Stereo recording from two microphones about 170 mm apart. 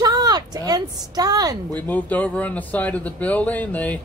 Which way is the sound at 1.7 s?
10° left (ahead or behind).